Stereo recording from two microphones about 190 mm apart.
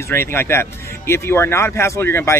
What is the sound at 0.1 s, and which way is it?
Speech, 10° left (ahead or behind).